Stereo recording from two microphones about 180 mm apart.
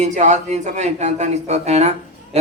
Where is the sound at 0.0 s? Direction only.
40° right (ahead or behind).